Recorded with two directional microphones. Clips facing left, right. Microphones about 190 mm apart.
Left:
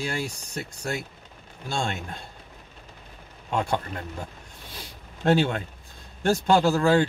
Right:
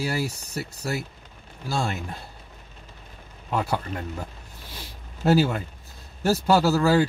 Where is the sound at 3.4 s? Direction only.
5° right (ahead or behind).